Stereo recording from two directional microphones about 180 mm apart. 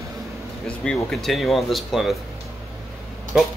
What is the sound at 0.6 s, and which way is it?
Speech, 5° left (ahead or behind).